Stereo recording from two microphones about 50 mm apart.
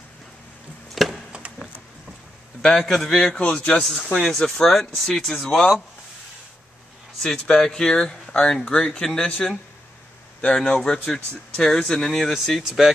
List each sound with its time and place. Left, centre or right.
0.9 s a sound: centre
2.8 s a man's voice: centre; by 3.7 s left
3.8 s speech: centre
7.2 s speech: centre
10.4 s speech: centre